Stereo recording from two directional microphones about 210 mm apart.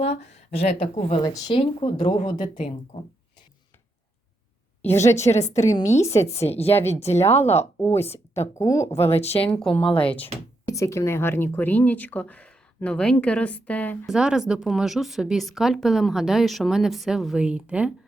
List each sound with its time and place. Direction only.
0.0 s speech: 30° left (ahead or behind)
4.8 s speech: 10° left (ahead or behind)
5.3 s a woman's voice: 30° left (ahead or behind)
5.9 s speech: 15° left (ahead or behind)
6.2 s speech: 30° left (ahead or behind)
7.1 s speech: 10° left (ahead or behind)
7.4 s a woman's voice: 30° left (ahead or behind)
7.8 s speech: 10° left (ahead or behind)
9.0 s speech: 30° left (ahead or behind)
9.4 s speech: 5° left (ahead or behind)
9.7 s speech: 25° left (ahead or behind)
10.7 s speech: 15° left (ahead or behind)
14.2 s speech: 5° right (ahead or behind)